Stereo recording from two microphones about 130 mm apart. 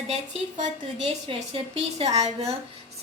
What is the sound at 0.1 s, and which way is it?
Speech, 65° right (ahead or behind).